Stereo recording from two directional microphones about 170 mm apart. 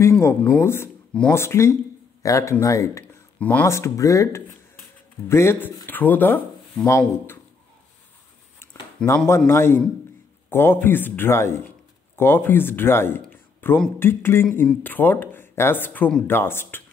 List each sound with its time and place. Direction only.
0.0 s speech: 15° left (ahead or behind)
8.5 s a sound: 15° left (ahead or behind)
9.5 s speech: 15° left (ahead or behind)